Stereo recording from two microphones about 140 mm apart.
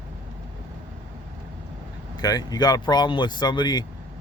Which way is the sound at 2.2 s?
30° left (ahead or behind).